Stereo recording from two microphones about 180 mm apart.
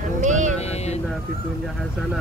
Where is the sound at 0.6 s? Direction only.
35° left (ahead or behind).